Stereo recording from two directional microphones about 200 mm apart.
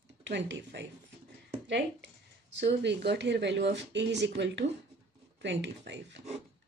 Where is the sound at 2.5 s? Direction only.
60° right (ahead or behind).